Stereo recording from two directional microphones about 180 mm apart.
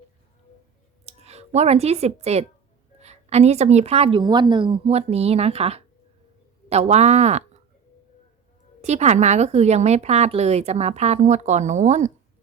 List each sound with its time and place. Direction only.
1.0 s a woman's voice: 35° right (ahead or behind)
8.8 s a woman's voice: 40° right (ahead or behind)